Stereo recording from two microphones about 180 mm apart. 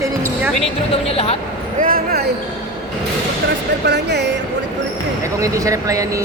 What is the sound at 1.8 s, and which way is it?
Basketball bounce, 55° right (ahead or behind).